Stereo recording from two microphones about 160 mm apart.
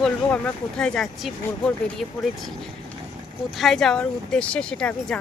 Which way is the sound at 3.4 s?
Centre (ahead or behind).